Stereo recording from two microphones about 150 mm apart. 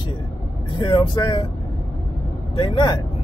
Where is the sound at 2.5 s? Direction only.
35° left (ahead or behind).